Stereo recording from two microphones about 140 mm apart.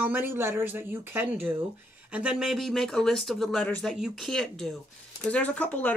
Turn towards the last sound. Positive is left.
turn(degrees=10)  # may be behind; listen again after turning